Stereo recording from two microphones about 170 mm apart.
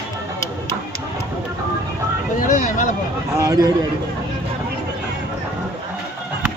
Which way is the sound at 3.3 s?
20° right (ahead or behind).